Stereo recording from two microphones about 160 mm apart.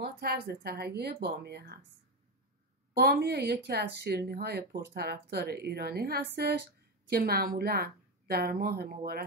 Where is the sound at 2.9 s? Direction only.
90° right.